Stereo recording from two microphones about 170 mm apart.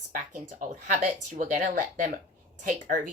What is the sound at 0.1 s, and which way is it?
A woman's voice, 50° right (ahead or behind).